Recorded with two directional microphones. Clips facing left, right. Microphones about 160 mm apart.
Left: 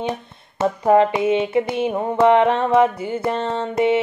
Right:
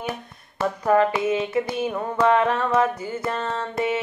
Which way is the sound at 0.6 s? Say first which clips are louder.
Left 4 dB; 25° left (ahead or behind).